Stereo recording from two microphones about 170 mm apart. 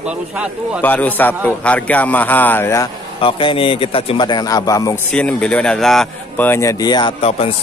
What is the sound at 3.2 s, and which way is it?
A man's voice, 30° left (ahead or behind).